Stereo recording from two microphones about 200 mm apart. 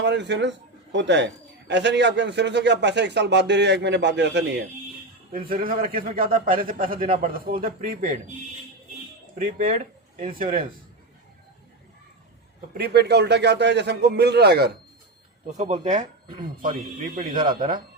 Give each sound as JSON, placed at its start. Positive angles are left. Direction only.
{"t": 0.0, "sound": "a man's voice", "side_deg": -60}
{"t": 5.3, "sound": "a man's voice", "side_deg": -45}
{"t": 9.4, "sound": "a man's voice", "side_deg": -40}
{"t": 12.7, "sound": "a man's voice", "side_deg": -50}
{"t": 15.4, "sound": "speech", "side_deg": -35}
{"t": 17.2, "sound": "speech", "side_deg": -25}